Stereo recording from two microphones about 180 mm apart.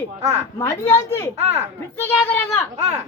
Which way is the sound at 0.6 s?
15° left (ahead or behind).